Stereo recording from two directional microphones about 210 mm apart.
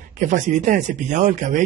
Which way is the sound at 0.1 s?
35° right (ahead or behind).